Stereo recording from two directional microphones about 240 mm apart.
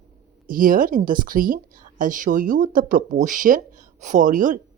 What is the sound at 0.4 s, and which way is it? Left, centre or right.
Speech, right.